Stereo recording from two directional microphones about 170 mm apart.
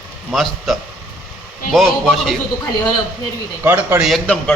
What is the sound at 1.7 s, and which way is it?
Speech, centre (ahead or behind).